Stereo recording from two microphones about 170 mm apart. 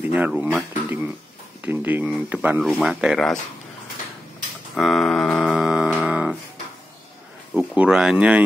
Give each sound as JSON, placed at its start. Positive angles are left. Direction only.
{"t": 0.0, "sound": "speech", "side_deg": -10}
{"t": 4.7, "sound": "a sound", "side_deg": 0}
{"t": 6.0, "sound": "dog", "side_deg": -5}
{"t": 7.5, "sound": "speech", "side_deg": -5}